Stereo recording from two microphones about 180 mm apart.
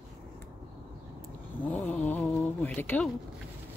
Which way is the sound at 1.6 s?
5° left (ahead or behind).